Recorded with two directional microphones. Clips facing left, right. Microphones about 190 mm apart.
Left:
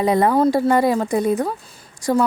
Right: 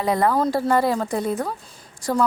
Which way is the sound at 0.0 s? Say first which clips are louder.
Left 4 dB; 20° left (ahead or behind).